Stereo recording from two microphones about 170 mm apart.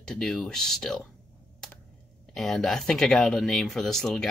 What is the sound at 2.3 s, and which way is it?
Speech, centre (ahead or behind).